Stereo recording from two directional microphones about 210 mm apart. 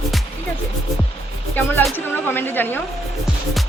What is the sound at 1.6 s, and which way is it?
Speech, 10° left (ahead or behind).